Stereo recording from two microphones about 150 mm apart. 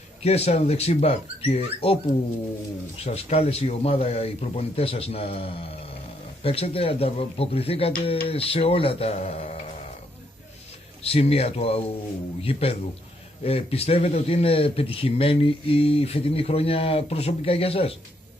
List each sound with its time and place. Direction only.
0.2 s a man's voice: 45° left (ahead or behind)
3.0 s a man's voice: 45° left (ahead or behind)
11.0 s a man's voice: 40° left (ahead or behind)